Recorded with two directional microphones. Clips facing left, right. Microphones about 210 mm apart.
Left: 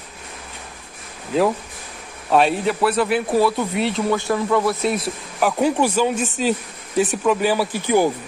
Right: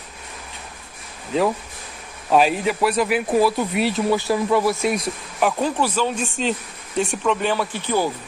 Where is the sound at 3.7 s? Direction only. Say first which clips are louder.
Even; 20° left (ahead or behind).